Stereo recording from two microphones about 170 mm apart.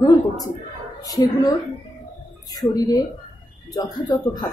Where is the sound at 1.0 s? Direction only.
20° left (ahead or behind).